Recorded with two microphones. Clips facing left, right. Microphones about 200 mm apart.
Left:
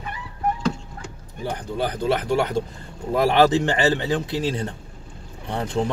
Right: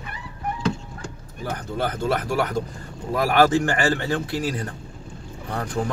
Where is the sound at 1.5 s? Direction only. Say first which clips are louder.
Left 1 dB; 15° left (ahead or behind).